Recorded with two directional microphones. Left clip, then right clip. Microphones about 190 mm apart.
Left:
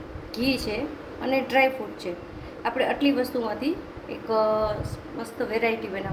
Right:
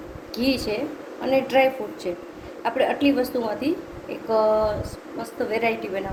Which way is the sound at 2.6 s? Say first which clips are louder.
Right 3 dB; 20° left (ahead or behind).